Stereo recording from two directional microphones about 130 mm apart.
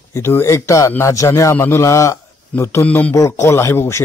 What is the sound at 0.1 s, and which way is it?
A man's voice, 20° left (ahead or behind).